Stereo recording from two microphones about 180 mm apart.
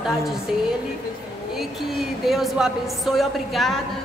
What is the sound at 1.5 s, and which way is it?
A woman's voice, centre (ahead or behind).